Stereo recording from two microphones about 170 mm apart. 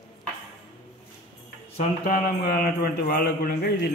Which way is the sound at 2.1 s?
60° left (ahead or behind).